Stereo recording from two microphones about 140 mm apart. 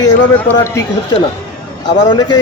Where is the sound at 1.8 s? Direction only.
30° left (ahead or behind).